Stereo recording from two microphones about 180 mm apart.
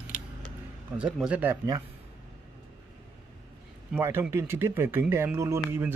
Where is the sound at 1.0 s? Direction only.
5° right (ahead or behind).